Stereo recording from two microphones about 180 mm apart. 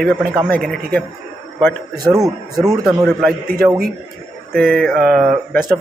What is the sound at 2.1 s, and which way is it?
Speech, 20° right (ahead or behind).